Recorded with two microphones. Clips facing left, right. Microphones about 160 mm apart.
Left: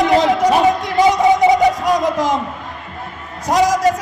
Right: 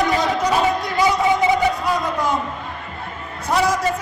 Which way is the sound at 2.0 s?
90° left.